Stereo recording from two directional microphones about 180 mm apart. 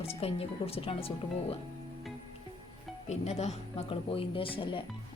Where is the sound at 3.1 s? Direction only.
35° left (ahead or behind).